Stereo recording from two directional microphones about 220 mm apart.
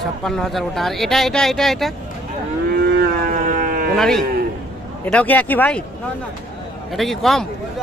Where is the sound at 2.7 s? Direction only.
45° right (ahead or behind).